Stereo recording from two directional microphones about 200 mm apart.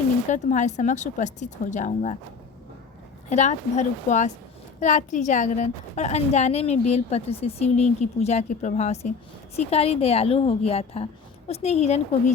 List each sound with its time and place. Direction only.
0.3 s a woman's voice: 35° left (ahead or behind)
3.2 s a woman's voice: 35° left (ahead or behind)